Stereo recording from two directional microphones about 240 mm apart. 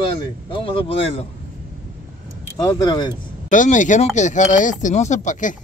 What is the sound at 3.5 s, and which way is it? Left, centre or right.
Speech, left.